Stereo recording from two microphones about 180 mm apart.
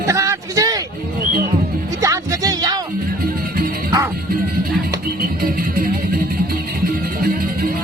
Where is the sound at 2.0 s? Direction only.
20° right (ahead or behind).